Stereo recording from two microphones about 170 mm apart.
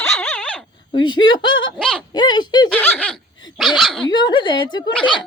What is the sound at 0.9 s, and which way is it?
Speech, 25° left (ahead or behind).